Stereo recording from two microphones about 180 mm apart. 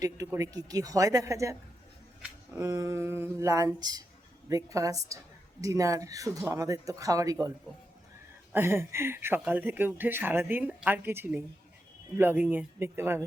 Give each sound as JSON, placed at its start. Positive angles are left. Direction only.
{"t": 0.0, "sound": "a woman's voice", "side_deg": -20}
{"t": 2.6, "sound": "a woman's voice", "side_deg": -15}
{"t": 8.5, "sound": "speech", "side_deg": -15}